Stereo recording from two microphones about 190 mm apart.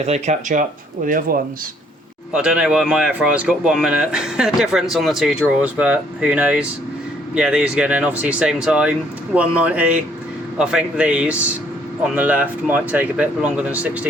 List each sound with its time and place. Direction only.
0.0 s speech: 35° right (ahead or behind)
2.3 s speech: 5° right (ahead or behind)